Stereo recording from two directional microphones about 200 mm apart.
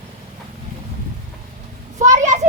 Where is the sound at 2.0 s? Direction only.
35° right (ahead or behind).